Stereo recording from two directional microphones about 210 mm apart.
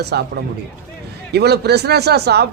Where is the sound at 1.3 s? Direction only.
50° right (ahead or behind).